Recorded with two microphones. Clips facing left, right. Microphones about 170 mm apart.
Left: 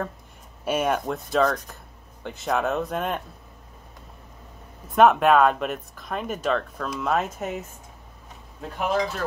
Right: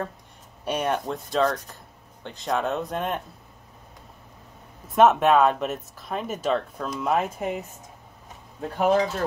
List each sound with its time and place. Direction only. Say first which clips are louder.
0.7 s speech: left 2 dB; 5° left (ahead or behind)
4.9 s speech: left 1 dB; centre (ahead or behind)
8.5 s speech: right 4 dB; 35° right (ahead or behind)